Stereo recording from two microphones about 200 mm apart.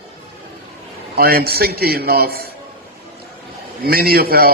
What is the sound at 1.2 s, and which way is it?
A man's voice, 50° right (ahead or behind).